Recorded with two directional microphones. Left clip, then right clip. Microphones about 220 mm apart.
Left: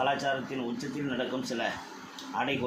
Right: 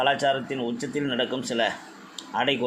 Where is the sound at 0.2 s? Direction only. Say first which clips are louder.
Right 7 dB; 45° right (ahead or behind).